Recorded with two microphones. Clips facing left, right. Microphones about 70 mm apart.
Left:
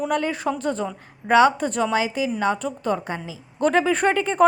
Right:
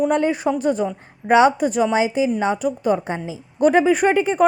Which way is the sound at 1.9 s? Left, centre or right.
Right.